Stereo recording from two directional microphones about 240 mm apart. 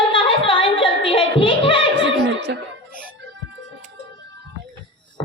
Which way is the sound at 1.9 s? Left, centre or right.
Right.